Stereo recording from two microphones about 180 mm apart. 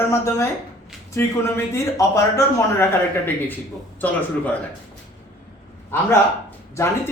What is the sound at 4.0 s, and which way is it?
Speech, 10° left (ahead or behind).